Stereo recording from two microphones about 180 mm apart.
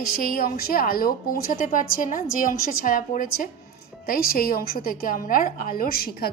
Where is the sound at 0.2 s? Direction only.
55° left (ahead or behind).